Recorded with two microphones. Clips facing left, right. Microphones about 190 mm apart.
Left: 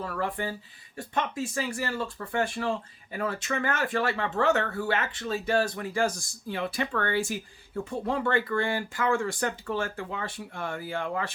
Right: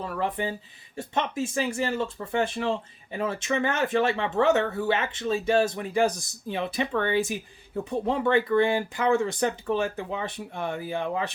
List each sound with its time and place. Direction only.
0.0 s speech: 20° right (ahead or behind)